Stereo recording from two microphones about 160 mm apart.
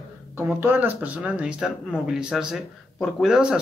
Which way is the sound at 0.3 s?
15° right (ahead or behind).